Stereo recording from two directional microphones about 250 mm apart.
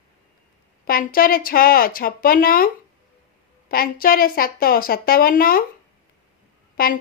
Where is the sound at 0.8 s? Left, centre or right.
Left.